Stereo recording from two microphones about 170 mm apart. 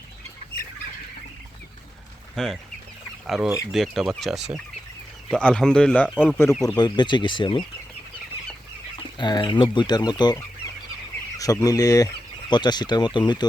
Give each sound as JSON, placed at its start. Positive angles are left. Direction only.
{"t": 2.3, "sound": "speech", "side_deg": 5}
{"t": 9.0, "sound": "speech", "side_deg": 25}